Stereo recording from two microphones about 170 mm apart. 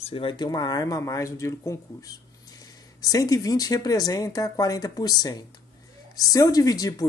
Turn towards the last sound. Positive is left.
turn(degrees=20)  # may be behind; listen again after turning